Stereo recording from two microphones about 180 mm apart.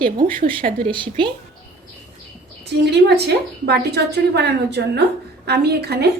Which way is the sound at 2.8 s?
65° right (ahead or behind).